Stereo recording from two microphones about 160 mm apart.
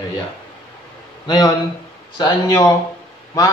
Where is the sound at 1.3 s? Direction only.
25° left (ahead or behind).